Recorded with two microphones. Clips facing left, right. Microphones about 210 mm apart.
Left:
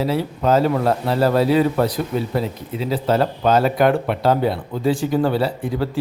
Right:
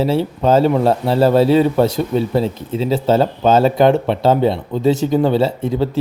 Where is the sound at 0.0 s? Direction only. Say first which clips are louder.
Right 4 dB; 25° right (ahead or behind).